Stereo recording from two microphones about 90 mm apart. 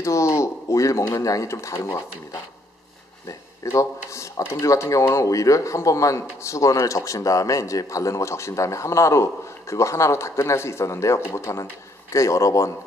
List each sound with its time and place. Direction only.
0.0 s speech: 35° left (ahead or behind)
3.3 s speech: 35° left (ahead or behind)